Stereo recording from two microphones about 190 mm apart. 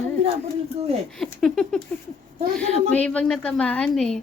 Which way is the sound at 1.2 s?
Centre (ahead or behind).